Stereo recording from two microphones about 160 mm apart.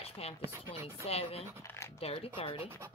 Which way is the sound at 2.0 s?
40° left (ahead or behind).